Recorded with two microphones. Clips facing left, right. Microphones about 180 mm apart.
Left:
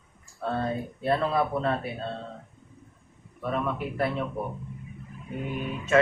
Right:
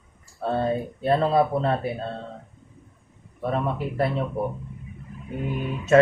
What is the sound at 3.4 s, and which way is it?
Speech, 30° right (ahead or behind).